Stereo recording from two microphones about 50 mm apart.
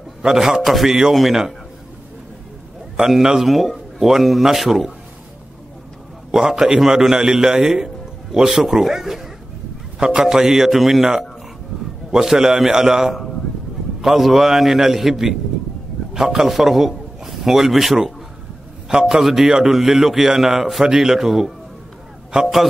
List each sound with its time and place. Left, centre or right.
0.2 s a man's voice: centre
3.0 s a man's voice: centre
6.3 s a man's voice: centre
22.3 s a man's voice: centre